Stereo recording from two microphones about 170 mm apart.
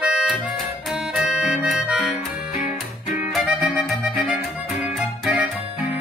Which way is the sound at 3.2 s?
10° right (ahead or behind).